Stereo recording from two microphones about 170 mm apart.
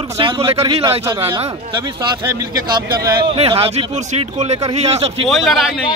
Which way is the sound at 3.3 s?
35° right (ahead or behind).